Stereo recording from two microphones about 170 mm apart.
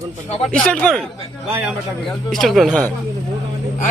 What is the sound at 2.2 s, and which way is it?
Speech, centre (ahead or behind).